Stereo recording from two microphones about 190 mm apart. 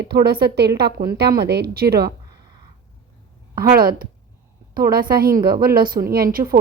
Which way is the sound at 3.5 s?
50° right (ahead or behind).